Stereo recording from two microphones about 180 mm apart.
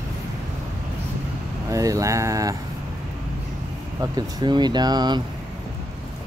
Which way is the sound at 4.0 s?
20° right (ahead or behind).